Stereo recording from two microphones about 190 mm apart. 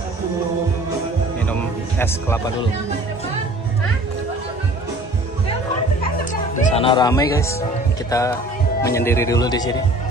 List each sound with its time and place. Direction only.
1.5 s music: 10° left (ahead or behind)
6.5 s speech: 35° left (ahead or behind); by 9.8 s 20° left (ahead or behind)